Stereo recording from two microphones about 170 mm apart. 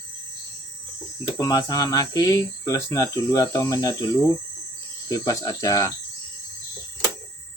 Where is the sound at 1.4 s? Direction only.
25° left (ahead or behind).